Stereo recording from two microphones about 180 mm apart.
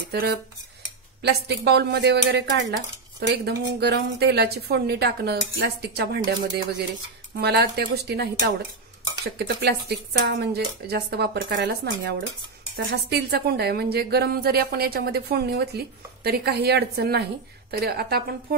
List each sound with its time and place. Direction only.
0.1 s cutlery: 65° right (ahead or behind)
1.2 s speech: 65° right (ahead or behind)